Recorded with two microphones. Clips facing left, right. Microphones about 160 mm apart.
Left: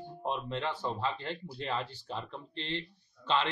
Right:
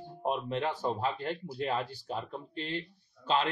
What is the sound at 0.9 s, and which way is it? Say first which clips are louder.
Speech: right 2 dB; 45° right (ahead or behind).